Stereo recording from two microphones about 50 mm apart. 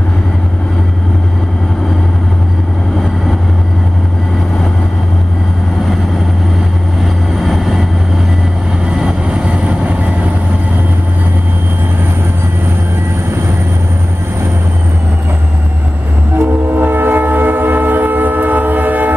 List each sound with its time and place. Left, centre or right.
7.3 s vehicle: centre
8.8 s vehicle: centre
16.3 s train: right